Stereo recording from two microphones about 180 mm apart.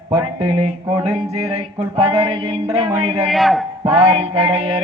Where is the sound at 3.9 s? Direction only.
30° right (ahead or behind).